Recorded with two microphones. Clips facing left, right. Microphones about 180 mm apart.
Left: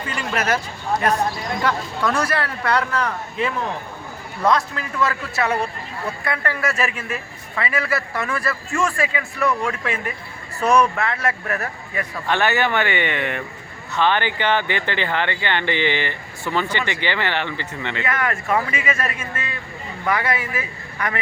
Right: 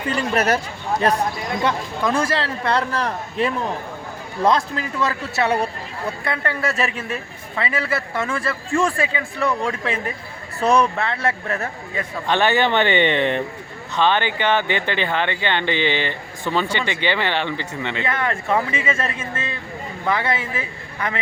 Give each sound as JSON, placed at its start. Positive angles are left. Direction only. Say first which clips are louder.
{"t": 0.3, "sound": "speech", "louder": "right 2 dB", "side_deg": -35}
{"t": 1.6, "sound": "speech", "louder": "even", "side_deg": -25}